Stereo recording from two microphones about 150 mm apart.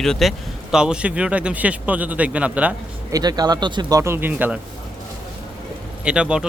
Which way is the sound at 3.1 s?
25° right (ahead or behind).